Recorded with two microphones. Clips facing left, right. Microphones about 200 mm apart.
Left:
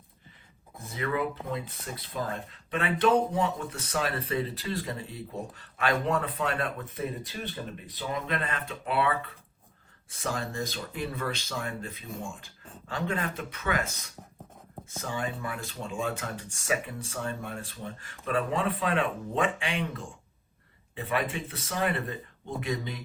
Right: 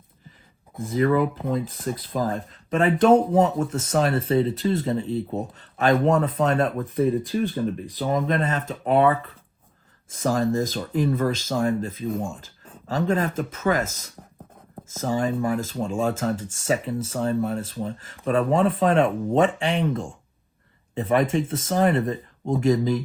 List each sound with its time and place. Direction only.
0.9 s speech: 40° right (ahead or behind)
6.7 s speech: 45° right (ahead or behind)
10.1 s speech: 45° right (ahead or behind)
12.9 s speech: 35° right (ahead or behind)
21.2 s speech: 40° right (ahead or behind)